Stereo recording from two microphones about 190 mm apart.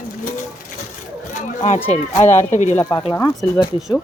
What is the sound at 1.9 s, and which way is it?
Speech, 35° left (ahead or behind).